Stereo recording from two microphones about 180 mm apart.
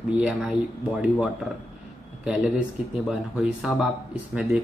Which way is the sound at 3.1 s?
5° right (ahead or behind).